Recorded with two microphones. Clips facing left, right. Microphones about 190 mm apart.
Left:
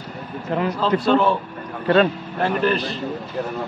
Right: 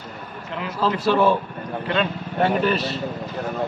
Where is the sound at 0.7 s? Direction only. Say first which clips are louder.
Left 1 dB; 5° right (ahead or behind).